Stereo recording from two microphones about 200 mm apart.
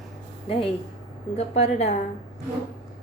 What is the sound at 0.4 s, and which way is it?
A woman's voice, 30° left (ahead or behind).